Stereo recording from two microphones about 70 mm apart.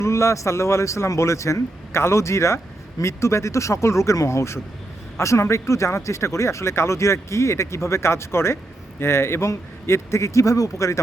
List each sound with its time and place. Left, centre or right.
0.0 s a man's voice: left